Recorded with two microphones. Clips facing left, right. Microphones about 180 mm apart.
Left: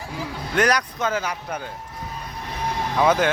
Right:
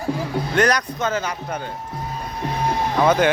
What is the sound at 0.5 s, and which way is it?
Speech, 10° left (ahead or behind).